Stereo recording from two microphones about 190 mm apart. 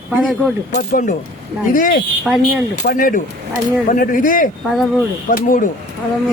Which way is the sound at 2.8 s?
45° left (ahead or behind).